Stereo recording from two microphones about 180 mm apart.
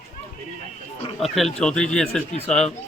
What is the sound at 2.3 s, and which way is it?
Speech, 40° left (ahead or behind).